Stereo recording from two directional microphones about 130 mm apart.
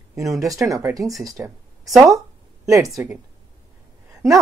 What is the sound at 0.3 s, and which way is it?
Speech, 25° right (ahead or behind).